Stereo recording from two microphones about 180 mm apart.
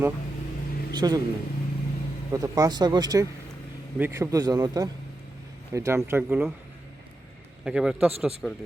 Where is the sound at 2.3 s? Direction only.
20° right (ahead or behind).